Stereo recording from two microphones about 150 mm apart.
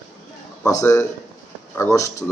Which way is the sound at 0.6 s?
20° left (ahead or behind).